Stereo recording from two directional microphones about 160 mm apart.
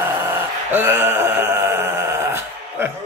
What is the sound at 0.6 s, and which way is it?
Mantra, 15° right (ahead or behind).